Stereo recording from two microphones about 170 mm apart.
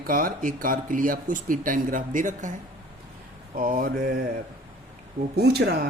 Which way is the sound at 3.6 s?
55° right (ahead or behind).